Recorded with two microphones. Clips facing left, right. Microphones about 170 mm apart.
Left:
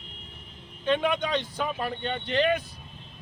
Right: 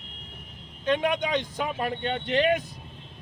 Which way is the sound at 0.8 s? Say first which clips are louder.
Even; 15° right (ahead or behind).